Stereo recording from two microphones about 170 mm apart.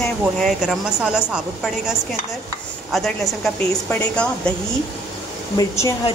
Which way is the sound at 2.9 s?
Centre (ahead or behind).